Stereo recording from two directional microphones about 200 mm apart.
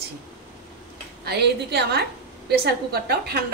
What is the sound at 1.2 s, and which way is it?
A woman's voice, 55° right (ahead or behind).